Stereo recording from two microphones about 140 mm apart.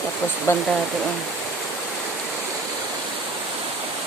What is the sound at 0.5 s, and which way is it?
Speech, 20° left (ahead or behind).